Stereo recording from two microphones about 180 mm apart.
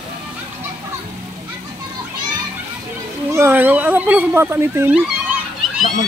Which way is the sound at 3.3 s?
15° right (ahead or behind).